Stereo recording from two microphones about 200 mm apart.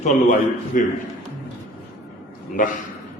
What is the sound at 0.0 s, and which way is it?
Speech, 40° left (ahead or behind).